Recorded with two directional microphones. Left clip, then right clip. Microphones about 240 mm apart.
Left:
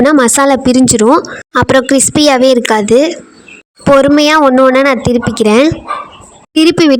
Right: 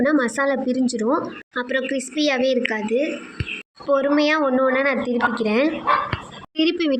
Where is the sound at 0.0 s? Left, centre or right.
Left.